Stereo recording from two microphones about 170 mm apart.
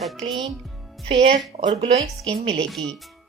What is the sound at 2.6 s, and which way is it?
Speech, 5° left (ahead or behind).